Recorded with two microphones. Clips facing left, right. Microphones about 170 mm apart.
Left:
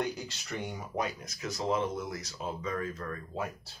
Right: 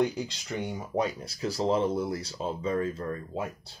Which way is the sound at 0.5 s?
30° right (ahead or behind).